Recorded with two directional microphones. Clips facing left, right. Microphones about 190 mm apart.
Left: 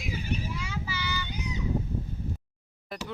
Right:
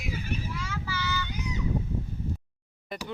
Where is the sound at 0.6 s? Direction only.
15° left (ahead or behind).